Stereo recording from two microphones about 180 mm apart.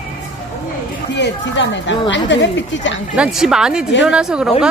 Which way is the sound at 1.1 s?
90° left.